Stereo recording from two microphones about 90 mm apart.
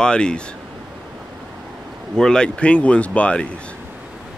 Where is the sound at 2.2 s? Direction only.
10° left (ahead or behind).